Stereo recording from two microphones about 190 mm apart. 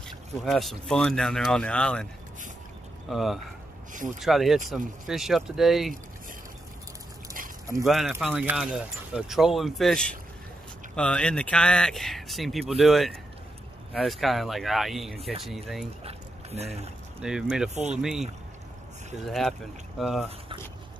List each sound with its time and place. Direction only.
0.4 s speech: centre (ahead or behind)
3.1 s speech: centre (ahead or behind)
7.8 s speech: centre (ahead or behind)
16.0 s boat: 30° right (ahead or behind)
17.2 s speech: 5° right (ahead or behind)
19.2 s speech: centre (ahead or behind)